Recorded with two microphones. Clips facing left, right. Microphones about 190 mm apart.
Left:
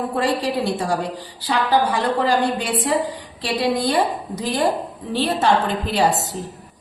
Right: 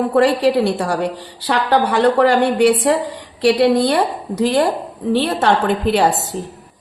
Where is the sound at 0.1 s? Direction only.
65° right (ahead or behind).